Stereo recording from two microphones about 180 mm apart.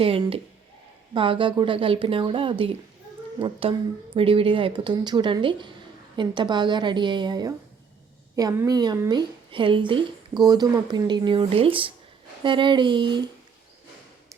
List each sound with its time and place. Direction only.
0.0 s a woman's voice: 30° right (ahead or behind)